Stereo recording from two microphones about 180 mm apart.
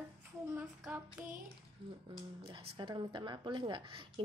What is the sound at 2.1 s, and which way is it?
Speech, 30° right (ahead or behind).